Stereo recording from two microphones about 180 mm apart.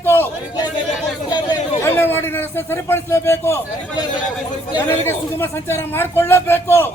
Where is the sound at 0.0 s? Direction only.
15° left (ahead or behind).